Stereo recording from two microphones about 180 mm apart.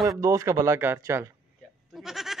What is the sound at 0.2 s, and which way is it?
Speech, 15° right (ahead or behind).